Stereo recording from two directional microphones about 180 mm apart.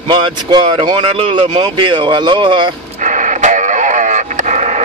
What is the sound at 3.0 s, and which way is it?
Radio, 45° right (ahead or behind).